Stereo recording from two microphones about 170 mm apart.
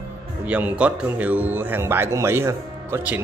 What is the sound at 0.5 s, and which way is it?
A man's voice, 10° right (ahead or behind).